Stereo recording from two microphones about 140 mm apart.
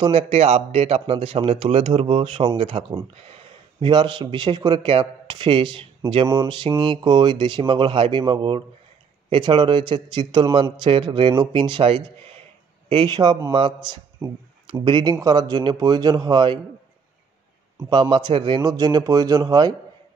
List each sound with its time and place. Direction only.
0.0 s a man's voice: 45° right (ahead or behind)
14.2 s speech: 15° right (ahead or behind)
14.7 s speech: 35° right (ahead or behind)
17.8 s speech: 30° right (ahead or behind)